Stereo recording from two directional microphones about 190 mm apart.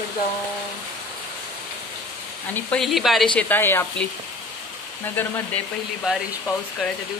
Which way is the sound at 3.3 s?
10° left (ahead or behind).